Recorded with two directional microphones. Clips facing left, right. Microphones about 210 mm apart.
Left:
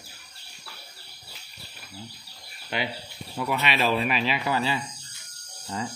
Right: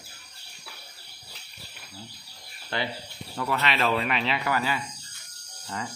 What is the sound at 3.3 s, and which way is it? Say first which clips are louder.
Speech: left 1 dB; 15° left (ahead or behind).